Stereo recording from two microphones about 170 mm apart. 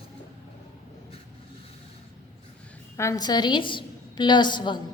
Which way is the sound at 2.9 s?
20° left (ahead or behind).